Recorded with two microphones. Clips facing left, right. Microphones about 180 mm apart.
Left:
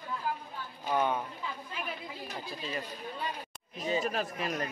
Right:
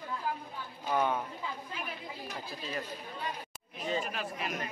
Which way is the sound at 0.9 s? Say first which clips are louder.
Left 1 dB; centre (ahead or behind).